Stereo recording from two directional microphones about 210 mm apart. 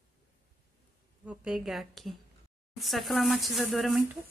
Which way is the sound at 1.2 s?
Centre (ahead or behind).